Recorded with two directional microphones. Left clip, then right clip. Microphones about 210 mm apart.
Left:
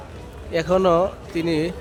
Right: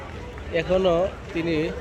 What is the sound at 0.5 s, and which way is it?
Speech, 25° left (ahead or behind).